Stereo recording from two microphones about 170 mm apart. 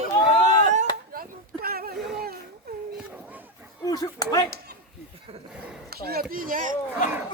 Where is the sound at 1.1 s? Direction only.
60° right (ahead or behind).